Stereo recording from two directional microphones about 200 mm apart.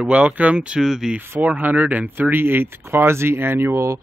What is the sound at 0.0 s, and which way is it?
A woman's voice, 5° right (ahead or behind).